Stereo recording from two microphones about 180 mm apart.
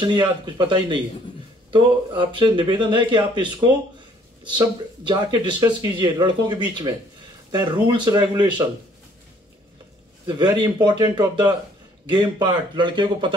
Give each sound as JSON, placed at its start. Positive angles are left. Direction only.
{"t": 0.0, "sound": "speech", "side_deg": -25}
{"t": 7.9, "sound": "speech", "side_deg": -25}
{"t": 10.2, "sound": "speech", "side_deg": -25}